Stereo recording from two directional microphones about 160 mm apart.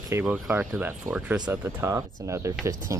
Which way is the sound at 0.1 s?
10° right (ahead or behind).